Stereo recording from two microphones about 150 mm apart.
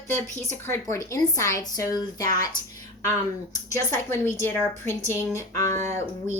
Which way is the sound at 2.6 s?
65° left (ahead or behind).